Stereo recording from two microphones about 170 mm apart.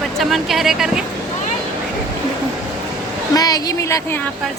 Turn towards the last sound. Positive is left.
turn(degrees=20)  # may be behind; listen again after turning